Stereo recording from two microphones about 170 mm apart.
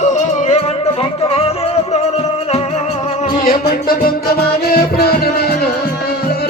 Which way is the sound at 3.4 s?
60° left (ahead or behind).